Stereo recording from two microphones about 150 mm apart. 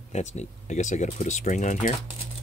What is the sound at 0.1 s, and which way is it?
Speech, 50° left (ahead or behind).